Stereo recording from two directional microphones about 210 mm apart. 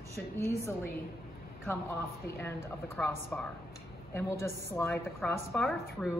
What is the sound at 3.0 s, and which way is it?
A woman's voice, 10° left (ahead or behind).